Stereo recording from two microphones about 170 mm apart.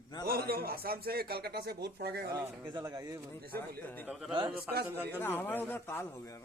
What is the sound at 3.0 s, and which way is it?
Speech, 20° right (ahead or behind).